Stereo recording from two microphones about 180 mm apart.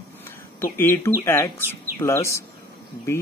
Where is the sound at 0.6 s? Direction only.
15° left (ahead or behind).